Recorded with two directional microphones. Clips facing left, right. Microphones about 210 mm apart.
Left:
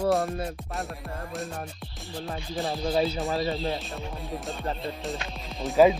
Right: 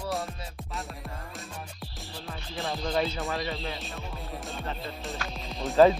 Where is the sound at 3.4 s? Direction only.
35° left (ahead or behind).